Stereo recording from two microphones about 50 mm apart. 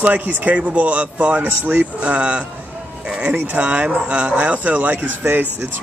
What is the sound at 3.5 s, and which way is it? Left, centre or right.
Speech, right.